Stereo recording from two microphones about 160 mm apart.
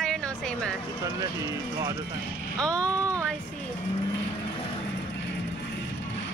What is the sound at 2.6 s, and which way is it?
Speech, 10° left (ahead or behind).